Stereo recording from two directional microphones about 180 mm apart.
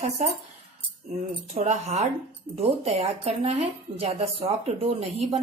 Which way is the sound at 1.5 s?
40° right (ahead or behind).